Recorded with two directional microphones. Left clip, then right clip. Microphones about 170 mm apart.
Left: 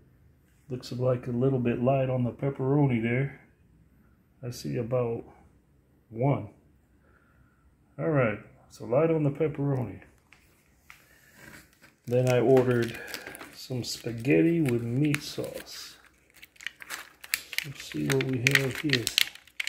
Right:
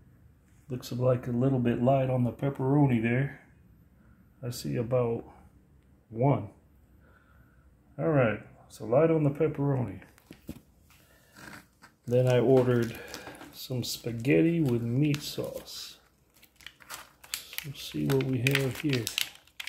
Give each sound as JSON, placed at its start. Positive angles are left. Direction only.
{"t": 0.7, "sound": "speech", "side_deg": 0}
{"t": 4.4, "sound": "speech", "side_deg": 0}
{"t": 7.9, "sound": "speech", "side_deg": -5}
{"t": 12.0, "sound": "speech", "side_deg": 0}
{"t": 14.6, "sound": "speech", "side_deg": -15}
{"t": 15.2, "sound": "speech", "side_deg": 0}
{"t": 16.4, "sound": "crumpling", "side_deg": -30}
{"t": 18.0, "sound": "speech", "side_deg": -20}